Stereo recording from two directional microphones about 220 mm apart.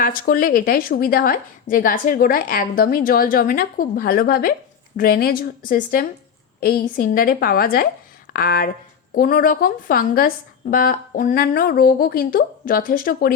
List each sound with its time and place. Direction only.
0.0 s a woman's voice: 40° left (ahead or behind)